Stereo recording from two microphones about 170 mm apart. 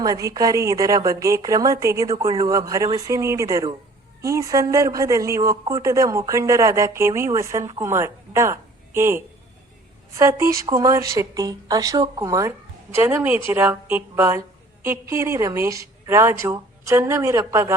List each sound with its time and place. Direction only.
0.0 s a woman's voice: 20° right (ahead or behind)